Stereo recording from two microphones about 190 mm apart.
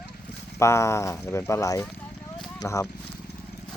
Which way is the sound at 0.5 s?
15° left (ahead or behind).